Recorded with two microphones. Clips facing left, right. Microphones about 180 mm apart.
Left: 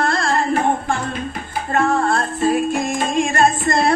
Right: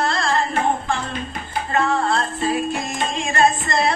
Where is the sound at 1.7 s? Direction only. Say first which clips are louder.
Left 3 dB; 50° left (ahead or behind).